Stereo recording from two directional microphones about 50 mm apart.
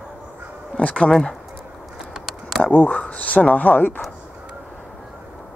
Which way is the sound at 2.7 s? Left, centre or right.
Left.